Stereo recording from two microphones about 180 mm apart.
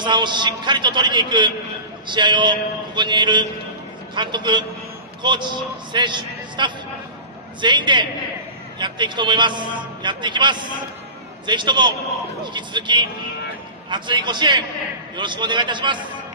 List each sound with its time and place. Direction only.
0.0 s a man's voice: 25° right (ahead or behind)